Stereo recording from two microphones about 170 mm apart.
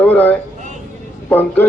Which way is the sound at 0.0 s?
10° left (ahead or behind).